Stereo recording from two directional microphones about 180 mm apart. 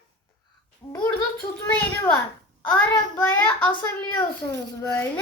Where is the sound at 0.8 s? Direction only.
15° left (ahead or behind).